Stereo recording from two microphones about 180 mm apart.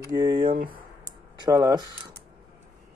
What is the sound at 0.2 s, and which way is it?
Speech, 25° right (ahead or behind).